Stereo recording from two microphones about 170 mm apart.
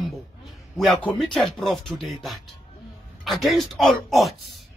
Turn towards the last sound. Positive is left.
turn(degrees=0)  # may be behind; listen again after turning